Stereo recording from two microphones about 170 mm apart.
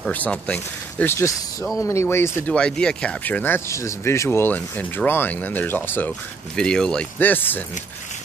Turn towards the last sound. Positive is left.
turn(degrees=10)  # may be behind; listen again after turning